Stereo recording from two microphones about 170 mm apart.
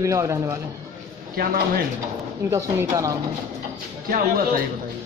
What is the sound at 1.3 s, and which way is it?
Speech, 60° right (ahead or behind).